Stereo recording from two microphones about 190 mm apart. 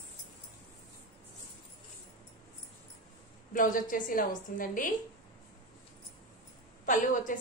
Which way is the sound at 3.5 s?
45° left (ahead or behind).